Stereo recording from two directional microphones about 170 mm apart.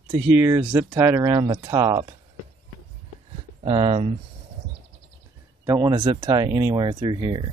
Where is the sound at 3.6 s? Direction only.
30° right (ahead or behind).